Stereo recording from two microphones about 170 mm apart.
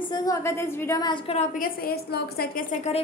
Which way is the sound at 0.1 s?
20° left (ahead or behind).